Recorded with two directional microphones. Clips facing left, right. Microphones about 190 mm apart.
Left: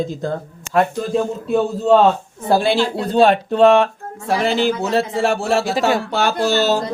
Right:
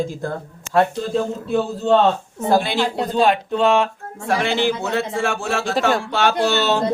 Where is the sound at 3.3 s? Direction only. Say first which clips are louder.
Left 5 dB; 40° left (ahead or behind).